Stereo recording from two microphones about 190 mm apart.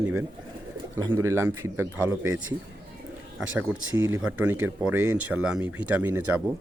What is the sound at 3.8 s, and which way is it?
Speech, 90° right.